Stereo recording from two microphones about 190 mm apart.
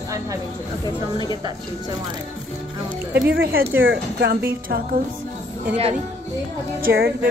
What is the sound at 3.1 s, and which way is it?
Speech, 55° right (ahead or behind).